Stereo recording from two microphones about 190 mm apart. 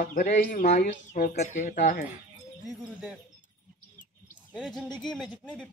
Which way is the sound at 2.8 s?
5° right (ahead or behind).